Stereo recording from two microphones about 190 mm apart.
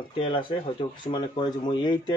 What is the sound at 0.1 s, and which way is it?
Speech, 30° left (ahead or behind).